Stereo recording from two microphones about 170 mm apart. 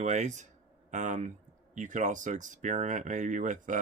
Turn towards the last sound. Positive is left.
turn(degrees=-50)  # may be behind; listen again after turning